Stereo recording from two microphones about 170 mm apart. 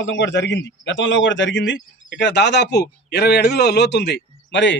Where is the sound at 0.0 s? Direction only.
90° left.